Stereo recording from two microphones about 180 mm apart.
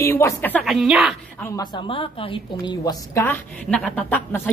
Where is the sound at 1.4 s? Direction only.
20° left (ahead or behind).